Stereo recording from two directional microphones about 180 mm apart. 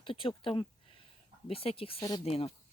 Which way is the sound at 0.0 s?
30° left (ahead or behind).